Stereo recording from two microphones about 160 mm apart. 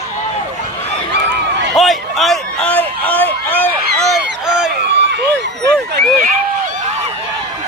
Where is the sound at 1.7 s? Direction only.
Centre (ahead or behind).